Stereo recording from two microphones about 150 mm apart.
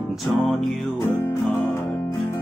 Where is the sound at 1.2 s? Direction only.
15° left (ahead or behind).